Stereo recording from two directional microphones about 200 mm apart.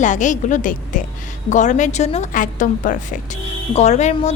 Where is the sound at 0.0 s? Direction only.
40° left (ahead or behind).